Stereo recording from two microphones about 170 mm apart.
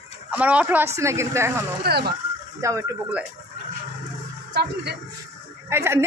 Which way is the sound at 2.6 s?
20° right (ahead or behind).